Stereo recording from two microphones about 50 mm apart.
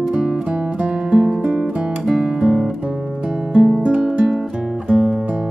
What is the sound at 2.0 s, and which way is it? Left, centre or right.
Guitar, centre.